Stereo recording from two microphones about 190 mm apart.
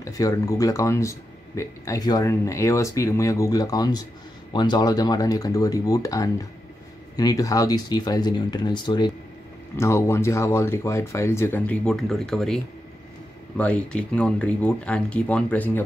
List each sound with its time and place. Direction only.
0.0 s speech: 15° left (ahead or behind)